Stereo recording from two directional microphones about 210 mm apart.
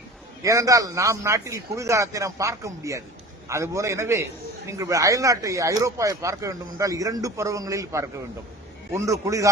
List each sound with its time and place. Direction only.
0.4 s speech: 15° right (ahead or behind)